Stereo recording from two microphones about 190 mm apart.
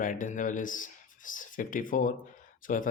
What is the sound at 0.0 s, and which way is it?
Speech, 45° left (ahead or behind).